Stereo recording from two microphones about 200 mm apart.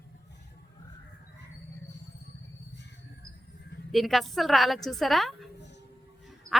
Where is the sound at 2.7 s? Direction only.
60° left (ahead or behind).